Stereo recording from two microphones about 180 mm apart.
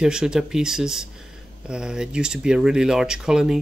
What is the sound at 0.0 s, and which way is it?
Speech, 5° right (ahead or behind).